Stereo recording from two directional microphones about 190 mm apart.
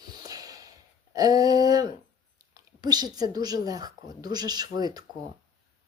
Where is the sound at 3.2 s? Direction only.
20° right (ahead or behind).